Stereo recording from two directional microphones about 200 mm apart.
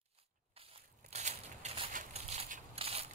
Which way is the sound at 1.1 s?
35° right (ahead or behind).